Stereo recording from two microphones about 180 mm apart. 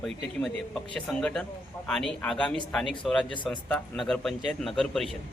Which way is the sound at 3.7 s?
5° left (ahead or behind).